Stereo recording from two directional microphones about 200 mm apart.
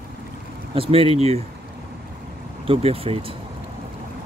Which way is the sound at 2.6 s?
30° right (ahead or behind).